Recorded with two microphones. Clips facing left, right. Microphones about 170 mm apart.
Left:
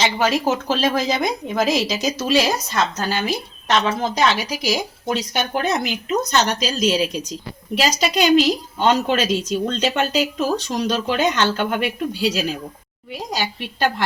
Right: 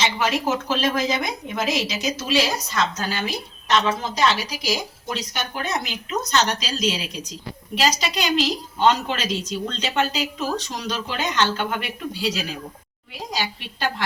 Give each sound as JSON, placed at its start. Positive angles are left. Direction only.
{"t": 0.0, "sound": "a woman's voice", "side_deg": 35}